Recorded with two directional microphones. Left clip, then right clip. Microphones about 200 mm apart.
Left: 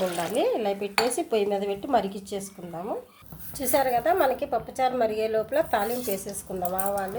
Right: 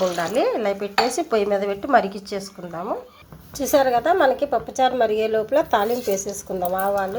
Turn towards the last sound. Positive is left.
turn(degrees=-15)  # may be behind; listen again after turning